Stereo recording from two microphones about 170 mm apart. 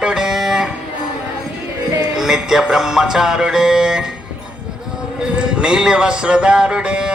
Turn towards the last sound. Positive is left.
turn(degrees=-5)  # may be behind; listen again after turning